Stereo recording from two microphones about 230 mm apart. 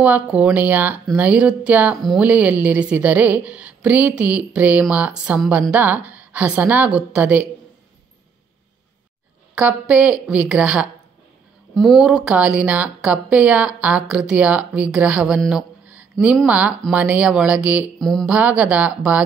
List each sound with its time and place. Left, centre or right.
0.0 s speech: centre
9.6 s a woman's voice: centre